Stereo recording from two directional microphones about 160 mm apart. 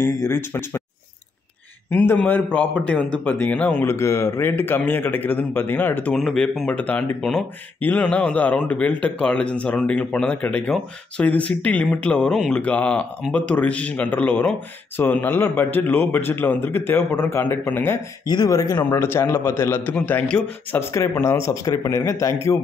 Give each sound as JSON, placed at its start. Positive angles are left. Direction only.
{"t": 0.0, "sound": "a man's voice", "side_deg": 15}
{"t": 1.9, "sound": "a man's voice", "side_deg": 10}
{"t": 18.3, "sound": "a man's voice", "side_deg": 25}